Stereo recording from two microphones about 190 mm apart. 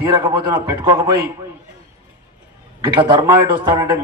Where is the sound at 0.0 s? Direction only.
15° right (ahead or behind).